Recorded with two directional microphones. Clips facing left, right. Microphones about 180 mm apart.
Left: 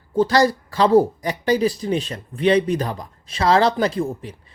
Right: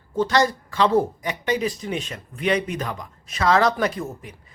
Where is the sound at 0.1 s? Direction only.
35° left (ahead or behind).